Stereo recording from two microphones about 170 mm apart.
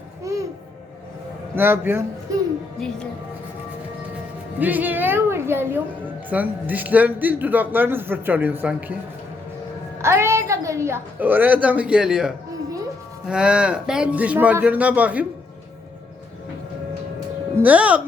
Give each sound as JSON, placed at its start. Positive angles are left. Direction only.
{"t": 0.3, "sound": "music", "side_deg": -20}
{"t": 1.5, "sound": "speech", "side_deg": -10}
{"t": 4.6, "sound": "speech", "side_deg": -10}
{"t": 10.0, "sound": "speech", "side_deg": -15}
{"t": 17.6, "sound": "speech", "side_deg": -10}